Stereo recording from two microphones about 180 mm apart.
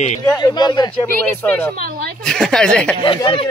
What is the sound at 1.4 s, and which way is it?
A woman's voice, 10° left (ahead or behind).